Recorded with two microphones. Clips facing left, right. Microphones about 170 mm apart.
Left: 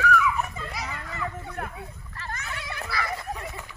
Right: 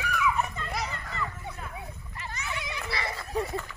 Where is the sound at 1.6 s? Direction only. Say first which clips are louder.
Left 7 dB; 65° left (ahead or behind).